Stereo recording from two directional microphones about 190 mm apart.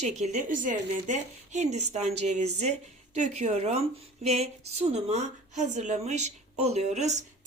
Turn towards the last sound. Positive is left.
turn(degrees=-35)  # may be behind; listen again after turning